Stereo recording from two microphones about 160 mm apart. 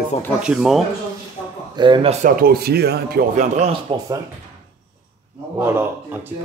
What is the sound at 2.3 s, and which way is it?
Speech, 70° right (ahead or behind).